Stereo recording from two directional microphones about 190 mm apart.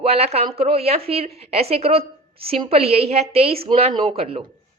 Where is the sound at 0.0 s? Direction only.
30° right (ahead or behind).